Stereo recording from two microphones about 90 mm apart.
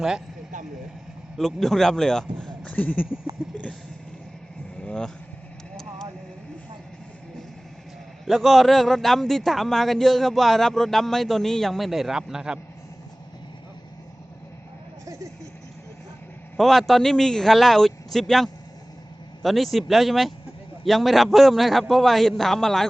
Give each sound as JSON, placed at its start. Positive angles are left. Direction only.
{"t": 1.4, "sound": "speech", "side_deg": 5}
{"t": 2.7, "sound": "speech", "side_deg": 20}
{"t": 4.8, "sound": "vehicle", "side_deg": 10}
{"t": 8.2, "sound": "a man's voice", "side_deg": 0}
{"t": 16.6, "sound": "a man's voice", "side_deg": 0}